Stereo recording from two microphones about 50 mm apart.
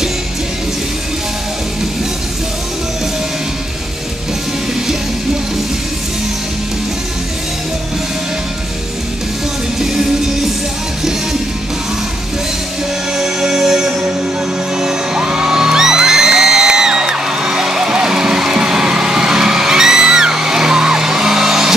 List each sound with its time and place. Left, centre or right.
13.1 s music: centre